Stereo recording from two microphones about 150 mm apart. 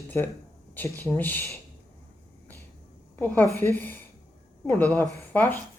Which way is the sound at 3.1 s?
10° left (ahead or behind).